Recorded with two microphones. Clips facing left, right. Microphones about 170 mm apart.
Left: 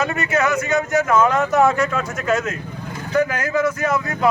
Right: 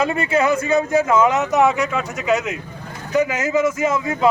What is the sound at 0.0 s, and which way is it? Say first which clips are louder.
A man's voice: right 2 dB; 30° right (ahead or behind).